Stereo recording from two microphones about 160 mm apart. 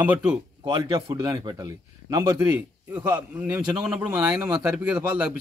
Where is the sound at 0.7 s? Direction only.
25° right (ahead or behind).